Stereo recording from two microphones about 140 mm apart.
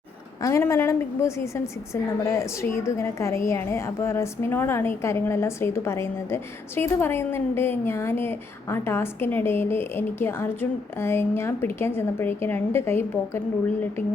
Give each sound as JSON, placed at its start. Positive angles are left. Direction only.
{"t": 0.4, "sound": "a woman's voice", "side_deg": 20}